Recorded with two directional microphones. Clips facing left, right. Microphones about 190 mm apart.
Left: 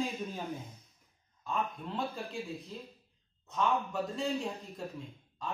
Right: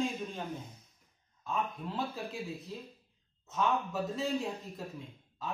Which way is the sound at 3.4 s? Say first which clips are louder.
Even; 5° right (ahead or behind).